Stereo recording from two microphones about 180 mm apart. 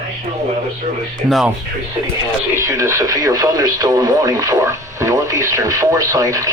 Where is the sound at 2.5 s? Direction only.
15° right (ahead or behind).